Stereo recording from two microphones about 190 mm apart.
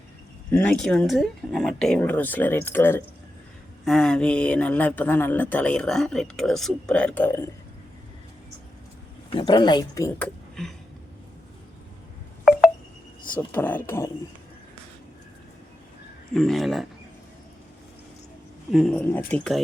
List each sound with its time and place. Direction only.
0.5 s speech: 5° left (ahead or behind)
9.3 s speech: 25° left (ahead or behind)
10.2 s speech: 5° left (ahead or behind)
13.5 s speech: 10° left (ahead or behind)
16.3 s speech: centre (ahead or behind)
18.7 s speech: centre (ahead or behind)